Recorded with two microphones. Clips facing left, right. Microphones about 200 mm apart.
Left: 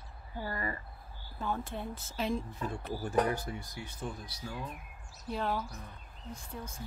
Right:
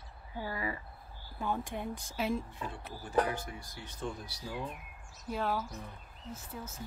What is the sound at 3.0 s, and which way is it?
Speech, 45° left (ahead or behind).